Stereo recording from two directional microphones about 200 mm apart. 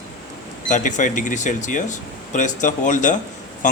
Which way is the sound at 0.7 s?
40° left (ahead or behind).